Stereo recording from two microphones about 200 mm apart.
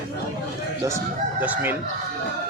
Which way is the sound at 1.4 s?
10° right (ahead or behind).